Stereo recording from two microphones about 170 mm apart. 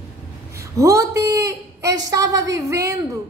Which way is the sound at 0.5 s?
20° right (ahead or behind).